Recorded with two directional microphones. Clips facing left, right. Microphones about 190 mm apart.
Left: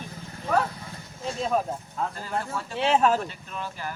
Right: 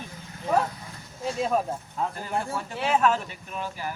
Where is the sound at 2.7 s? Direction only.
25° left (ahead or behind).